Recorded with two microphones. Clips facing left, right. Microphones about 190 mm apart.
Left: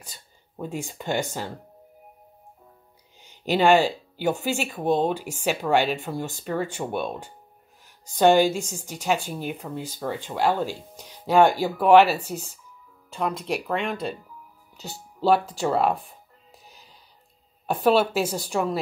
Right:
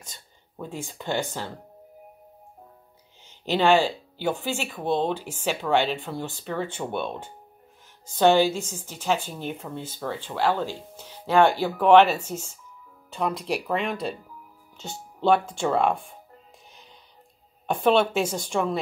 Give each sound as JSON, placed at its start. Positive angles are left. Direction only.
{"t": 0.0, "sound": "speech", "side_deg": 10}
{"t": 3.3, "sound": "a woman's voice", "side_deg": 15}
{"t": 15.2, "sound": "a woman's voice", "side_deg": 5}
{"t": 17.6, "sound": "a woman's voice", "side_deg": 5}